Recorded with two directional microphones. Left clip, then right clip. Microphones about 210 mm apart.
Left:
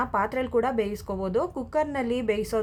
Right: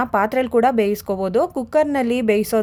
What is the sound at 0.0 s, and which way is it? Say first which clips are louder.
Speech: right 7 dB; 40° right (ahead or behind).